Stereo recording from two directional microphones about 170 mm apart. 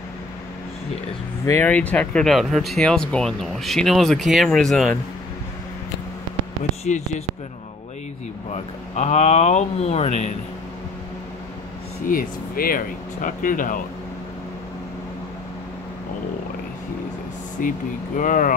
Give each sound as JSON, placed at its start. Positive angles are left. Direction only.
{"t": 1.4, "sound": "speech", "side_deg": 15}
{"t": 6.8, "sound": "speech", "side_deg": 40}
{"t": 8.9, "sound": "speech", "side_deg": 40}
{"t": 12.1, "sound": "speech", "side_deg": 55}
{"t": 17.6, "sound": "speech", "side_deg": 50}